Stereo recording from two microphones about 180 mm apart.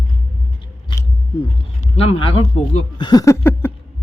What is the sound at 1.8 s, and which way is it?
Speech, 35° left (ahead or behind).